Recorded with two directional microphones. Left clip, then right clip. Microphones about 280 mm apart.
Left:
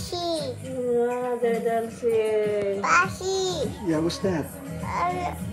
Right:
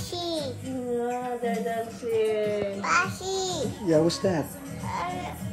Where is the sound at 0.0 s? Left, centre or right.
Centre.